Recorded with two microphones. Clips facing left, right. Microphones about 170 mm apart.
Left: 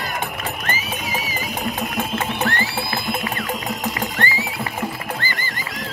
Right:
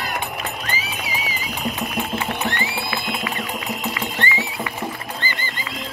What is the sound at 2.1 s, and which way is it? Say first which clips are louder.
Music: left 2 dB; 20° right (ahead or behind).